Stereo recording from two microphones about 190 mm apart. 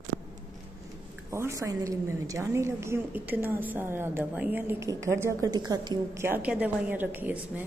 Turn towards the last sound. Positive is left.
turn(degrees=-10)  # may be behind; listen again after turning